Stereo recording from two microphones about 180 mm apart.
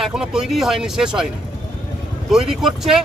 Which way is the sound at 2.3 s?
Centre (ahead or behind).